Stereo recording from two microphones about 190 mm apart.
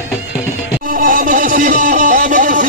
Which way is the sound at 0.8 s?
45° right (ahead or behind).